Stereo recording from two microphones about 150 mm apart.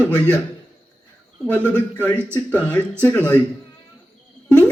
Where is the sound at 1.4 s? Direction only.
15° right (ahead or behind).